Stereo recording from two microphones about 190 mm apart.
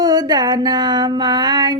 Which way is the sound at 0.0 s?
20° right (ahead or behind).